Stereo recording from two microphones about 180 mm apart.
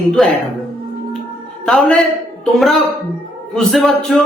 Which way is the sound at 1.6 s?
5° left (ahead or behind).